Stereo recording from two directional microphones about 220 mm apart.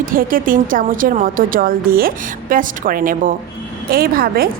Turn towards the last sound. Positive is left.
turn(degrees=-40)  # may be behind; listen again after turning